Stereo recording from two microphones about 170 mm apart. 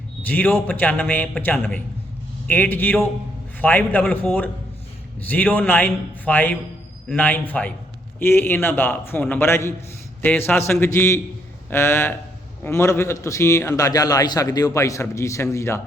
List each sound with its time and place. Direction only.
0.2 s a man's voice: 10° left (ahead or behind)